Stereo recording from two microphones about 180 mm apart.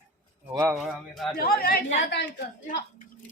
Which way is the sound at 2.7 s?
45° left (ahead or behind).